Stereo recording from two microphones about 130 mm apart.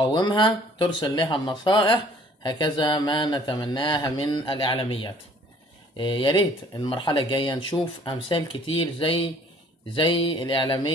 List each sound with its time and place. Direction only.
0.0 s speech: 35° left (ahead or behind)